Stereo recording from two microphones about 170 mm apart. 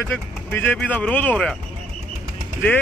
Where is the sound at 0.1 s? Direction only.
10° left (ahead or behind).